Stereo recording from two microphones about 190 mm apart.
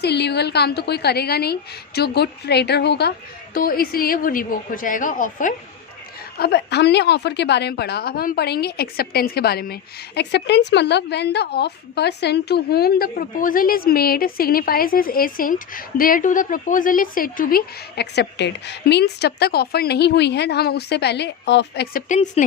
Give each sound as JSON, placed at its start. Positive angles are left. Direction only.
{"t": 0.0, "sound": "a woman's voice", "side_deg": 60}
{"t": 3.5, "sound": "a woman's voice", "side_deg": 50}
{"t": 6.4, "sound": "a woman's voice", "side_deg": 60}
{"t": 22.1, "sound": "speech", "side_deg": 40}